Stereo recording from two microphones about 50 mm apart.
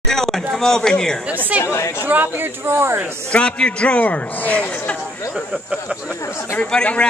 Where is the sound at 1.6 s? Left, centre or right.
Left.